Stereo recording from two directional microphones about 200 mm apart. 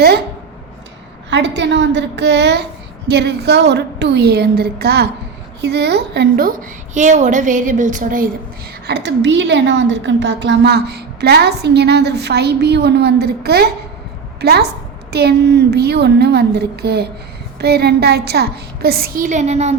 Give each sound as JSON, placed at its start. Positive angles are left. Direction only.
{"t": 1.3, "sound": "a woman's voice", "side_deg": -60}
{"t": 8.9, "sound": "a woman's voice", "side_deg": -60}